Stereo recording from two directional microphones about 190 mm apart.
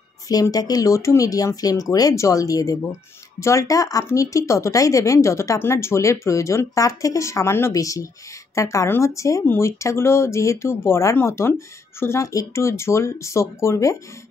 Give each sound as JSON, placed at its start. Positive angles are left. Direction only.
{"t": 0.3, "sound": "a woman's voice", "side_deg": 20}